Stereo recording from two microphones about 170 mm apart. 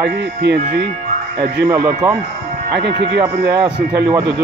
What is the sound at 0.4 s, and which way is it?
Speech, 80° right.